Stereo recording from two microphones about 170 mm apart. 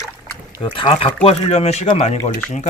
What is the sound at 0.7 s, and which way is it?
Speech, 30° left (ahead or behind).